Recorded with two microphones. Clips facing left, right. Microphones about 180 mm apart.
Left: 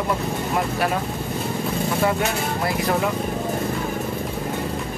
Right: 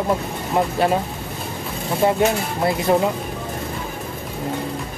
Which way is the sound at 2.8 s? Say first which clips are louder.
Right 5 dB; 25° right (ahead or behind).